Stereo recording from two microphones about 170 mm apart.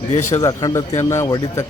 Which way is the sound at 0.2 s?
15° left (ahead or behind).